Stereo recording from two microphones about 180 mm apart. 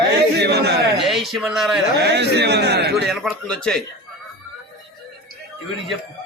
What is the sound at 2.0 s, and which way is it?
A man's voice, 70° right (ahead or behind).